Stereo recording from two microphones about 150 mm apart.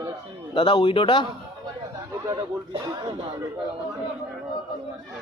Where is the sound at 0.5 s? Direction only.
35° left (ahead or behind).